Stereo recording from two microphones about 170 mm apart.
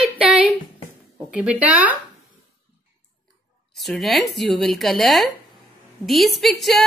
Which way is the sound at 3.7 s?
Centre (ahead or behind).